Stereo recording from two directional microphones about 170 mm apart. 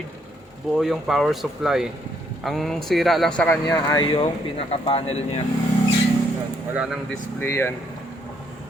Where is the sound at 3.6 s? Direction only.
20° left (ahead or behind); by 5.4 s 40° left (ahead or behind).